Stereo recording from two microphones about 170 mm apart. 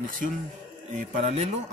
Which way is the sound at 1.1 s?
45° right (ahead or behind).